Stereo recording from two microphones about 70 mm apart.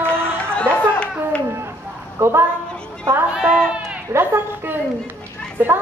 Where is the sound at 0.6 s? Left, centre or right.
Centre.